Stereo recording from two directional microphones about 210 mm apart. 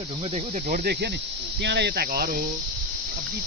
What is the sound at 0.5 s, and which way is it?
Speech, 40° right (ahead or behind).